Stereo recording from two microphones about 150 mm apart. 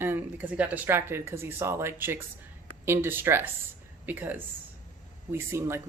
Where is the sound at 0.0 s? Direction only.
15° right (ahead or behind).